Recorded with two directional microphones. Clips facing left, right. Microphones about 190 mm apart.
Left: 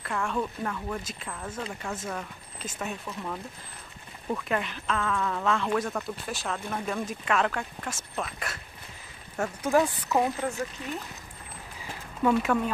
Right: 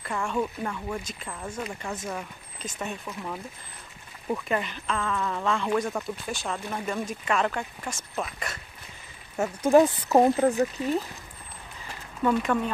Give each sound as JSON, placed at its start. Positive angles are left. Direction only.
{"t": 0.0, "sound": "speech", "side_deg": 0}
{"t": 9.4, "sound": "speech", "side_deg": -15}
{"t": 10.0, "sound": "speech", "side_deg": -35}
{"t": 12.2, "sound": "speech", "side_deg": 5}